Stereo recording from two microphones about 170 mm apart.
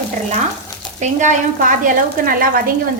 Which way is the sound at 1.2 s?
55° right (ahead or behind).